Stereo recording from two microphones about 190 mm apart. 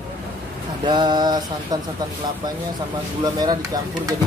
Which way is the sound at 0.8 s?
25° right (ahead or behind).